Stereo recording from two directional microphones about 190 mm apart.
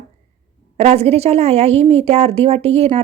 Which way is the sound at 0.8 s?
35° right (ahead or behind).